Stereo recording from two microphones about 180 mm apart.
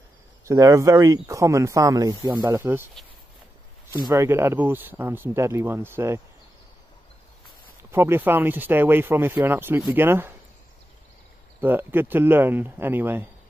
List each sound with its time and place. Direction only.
0.5 s speech: 15° right (ahead or behind)
4.0 s speech: 15° right (ahead or behind)
7.9 s speech: 15° right (ahead or behind)
11.6 s speech: 10° right (ahead or behind)